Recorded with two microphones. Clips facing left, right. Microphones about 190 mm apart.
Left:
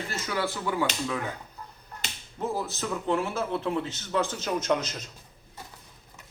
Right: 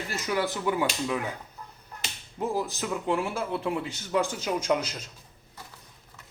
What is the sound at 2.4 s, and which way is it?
A man's voice, 15° right (ahead or behind).